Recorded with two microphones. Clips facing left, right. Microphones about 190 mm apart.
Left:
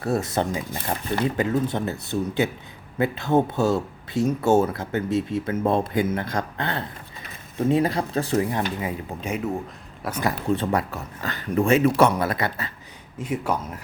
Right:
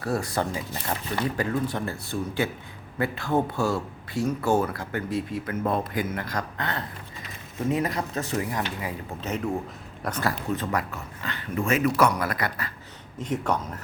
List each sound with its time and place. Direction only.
0.0 s speech: 25° left (ahead or behind)
9.2 s speech: 10° left (ahead or behind)
10.5 s speech: 30° left (ahead or behind)
11.2 s speech: 40° left (ahead or behind)
13.1 s speech: 10° left (ahead or behind)